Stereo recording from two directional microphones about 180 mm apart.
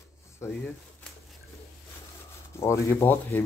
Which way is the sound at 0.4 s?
15° left (ahead or behind).